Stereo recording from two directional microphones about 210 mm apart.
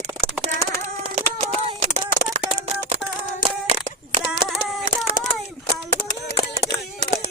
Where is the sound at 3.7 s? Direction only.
25° right (ahead or behind).